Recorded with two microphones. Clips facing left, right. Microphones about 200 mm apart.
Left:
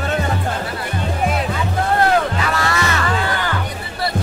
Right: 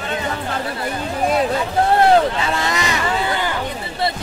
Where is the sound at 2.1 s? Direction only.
25° right (ahead or behind).